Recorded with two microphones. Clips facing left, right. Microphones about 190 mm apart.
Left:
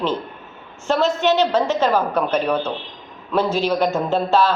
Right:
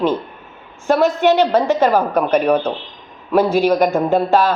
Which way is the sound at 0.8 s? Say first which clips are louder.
Right 4 dB; 15° right (ahead or behind).